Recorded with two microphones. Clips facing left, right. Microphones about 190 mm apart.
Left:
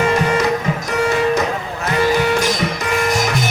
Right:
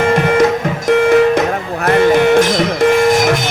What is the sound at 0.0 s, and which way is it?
Music, 50° right (ahead or behind).